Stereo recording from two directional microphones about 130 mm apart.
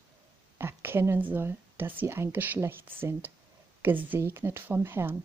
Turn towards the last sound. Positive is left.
turn(degrees=-20)  # may be behind; listen again after turning